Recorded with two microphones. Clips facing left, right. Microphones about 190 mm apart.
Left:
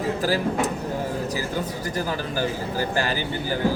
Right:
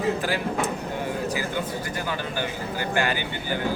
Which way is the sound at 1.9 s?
35° left (ahead or behind).